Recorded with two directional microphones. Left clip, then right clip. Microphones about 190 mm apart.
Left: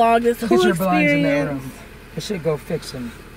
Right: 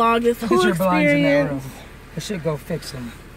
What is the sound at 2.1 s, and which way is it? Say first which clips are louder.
Speech: left 3 dB; 60° right (ahead or behind).